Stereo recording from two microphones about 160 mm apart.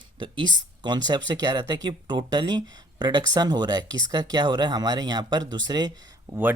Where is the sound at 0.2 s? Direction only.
30° right (ahead or behind).